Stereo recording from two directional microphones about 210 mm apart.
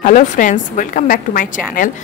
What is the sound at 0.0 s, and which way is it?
Speech, 35° left (ahead or behind).